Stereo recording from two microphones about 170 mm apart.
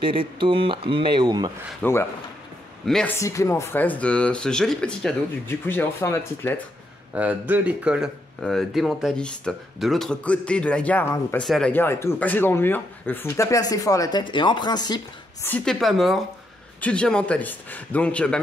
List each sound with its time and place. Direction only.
0.0 s speech: 30° right (ahead or behind)
1.8 s speech: 15° left (ahead or behind)
3.2 s speech: 20° left (ahead or behind)
7.2 s speech: 10° right (ahead or behind)
11.7 s speech: 15° left (ahead or behind)
15.4 s speech: 5° left (ahead or behind)